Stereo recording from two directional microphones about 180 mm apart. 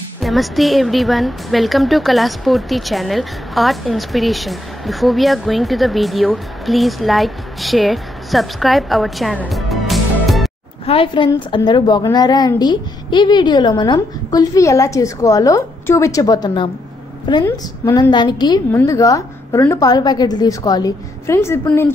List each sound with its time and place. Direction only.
0.2 s a woman's voice: centre (ahead or behind)
10.9 s a woman's voice: 30° left (ahead or behind); by 21.9 s 15° left (ahead or behind)